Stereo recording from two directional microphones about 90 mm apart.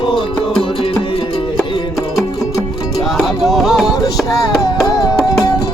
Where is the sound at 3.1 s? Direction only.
Centre (ahead or behind).